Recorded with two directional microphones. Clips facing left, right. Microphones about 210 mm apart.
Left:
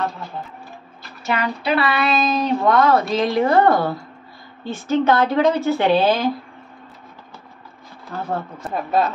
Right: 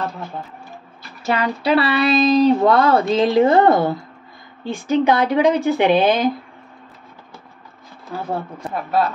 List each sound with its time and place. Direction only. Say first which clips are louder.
1.2 s speech: right 3 dB; 35° right (ahead or behind); by 6.3 s 20° right (ahead or behind)
8.1 s speech: right 1 dB; 10° right (ahead or behind)